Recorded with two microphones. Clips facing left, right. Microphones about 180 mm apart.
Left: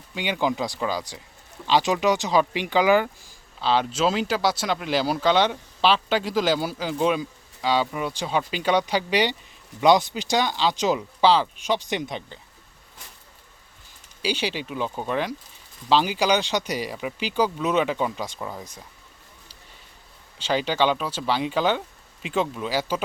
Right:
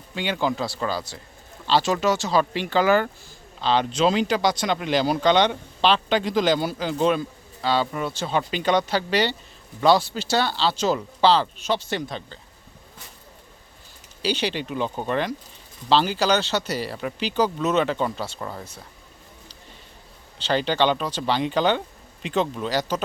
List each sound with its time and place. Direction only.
0.1 s speech: 10° left (ahead or behind)
14.2 s speech: 10° left (ahead or behind)
20.4 s speech: 10° left (ahead or behind)